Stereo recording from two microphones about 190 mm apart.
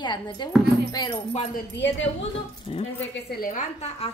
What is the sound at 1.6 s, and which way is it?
Speech, 70° left (ahead or behind).